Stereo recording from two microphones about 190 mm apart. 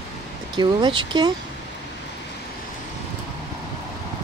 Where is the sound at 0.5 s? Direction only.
25° right (ahead or behind).